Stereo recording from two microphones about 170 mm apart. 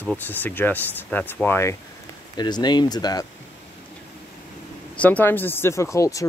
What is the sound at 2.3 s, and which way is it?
Speech, 25° left (ahead or behind).